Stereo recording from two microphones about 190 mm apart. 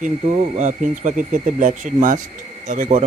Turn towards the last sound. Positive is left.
turn(degrees=-40)  # may be behind; listen again after turning